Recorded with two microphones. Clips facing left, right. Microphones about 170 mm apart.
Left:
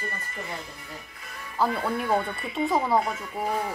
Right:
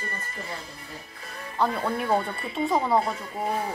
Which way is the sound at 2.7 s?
Centre (ahead or behind).